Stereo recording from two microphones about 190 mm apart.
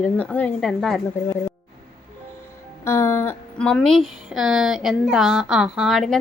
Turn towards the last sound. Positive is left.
turn(degrees=0)  # may be behind; listen again after turning